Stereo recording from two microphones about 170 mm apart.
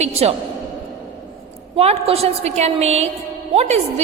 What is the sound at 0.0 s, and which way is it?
Speech, 35° right (ahead or behind).